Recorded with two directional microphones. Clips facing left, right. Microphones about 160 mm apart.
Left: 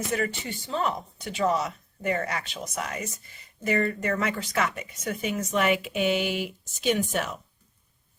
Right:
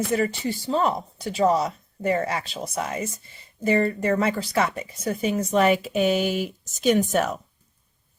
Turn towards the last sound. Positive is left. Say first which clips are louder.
# right 6 dB
turn(degrees=-45)  # may be behind; listen again after turning